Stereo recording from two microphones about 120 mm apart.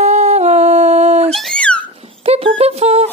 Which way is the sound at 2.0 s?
55° right (ahead or behind).